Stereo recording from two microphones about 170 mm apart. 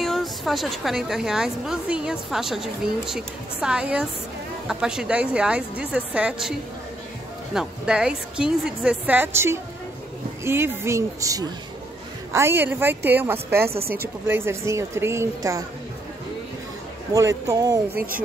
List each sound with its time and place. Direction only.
0.0 s a woman's voice: centre (ahead or behind)
7.5 s a woman's voice: 5° right (ahead or behind)
13.8 s speech: 65° right (ahead or behind)
14.2 s a woman's voice: 15° right (ahead or behind)
17.1 s speech: 20° right (ahead or behind)
17.9 s speech: 60° right (ahead or behind)